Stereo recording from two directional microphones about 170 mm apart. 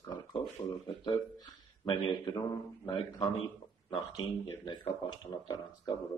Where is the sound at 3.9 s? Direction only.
25° left (ahead or behind).